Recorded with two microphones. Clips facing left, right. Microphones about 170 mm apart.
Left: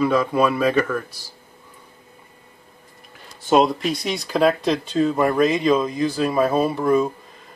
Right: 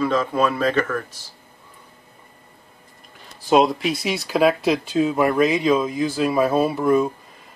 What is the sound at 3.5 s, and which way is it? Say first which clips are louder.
Speech: even; centre (ahead or behind).